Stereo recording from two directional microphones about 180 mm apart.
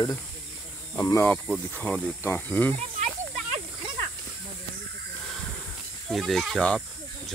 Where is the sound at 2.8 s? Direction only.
40° right (ahead or behind).